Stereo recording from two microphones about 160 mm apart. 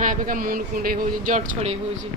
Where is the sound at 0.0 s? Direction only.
55° right (ahead or behind).